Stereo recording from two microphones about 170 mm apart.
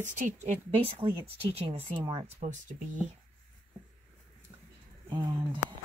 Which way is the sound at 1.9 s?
20° right (ahead or behind).